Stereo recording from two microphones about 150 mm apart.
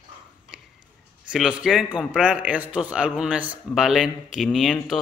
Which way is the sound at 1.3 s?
5° right (ahead or behind).